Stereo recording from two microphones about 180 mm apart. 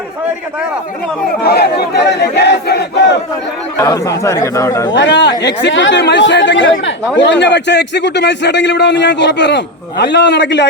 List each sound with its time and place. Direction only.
1.5 s a man's voice: 65° left (ahead or behind)
3.8 s a man's voice: 20° left (ahead or behind)
4.9 s a man's voice: 70° left (ahead or behind)
5.6 s speech: 85° left
7.2 s a man's voice: 75° left (ahead or behind)